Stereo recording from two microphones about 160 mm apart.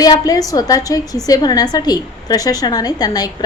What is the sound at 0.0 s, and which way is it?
A woman's voice, 25° left (ahead or behind).